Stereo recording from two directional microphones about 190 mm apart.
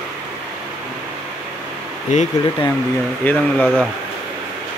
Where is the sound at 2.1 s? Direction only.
40° left (ahead or behind).